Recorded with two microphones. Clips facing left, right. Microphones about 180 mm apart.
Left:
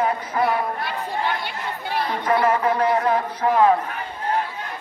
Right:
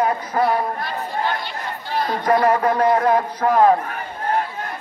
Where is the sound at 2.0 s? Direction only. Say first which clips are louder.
Right 3 dB; 40° right (ahead or behind).